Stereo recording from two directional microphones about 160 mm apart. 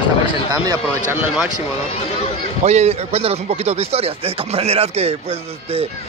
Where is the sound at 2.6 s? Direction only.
40° right (ahead or behind).